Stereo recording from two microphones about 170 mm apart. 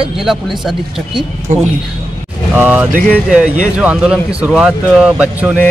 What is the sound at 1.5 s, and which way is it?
Speech, 45° right (ahead or behind).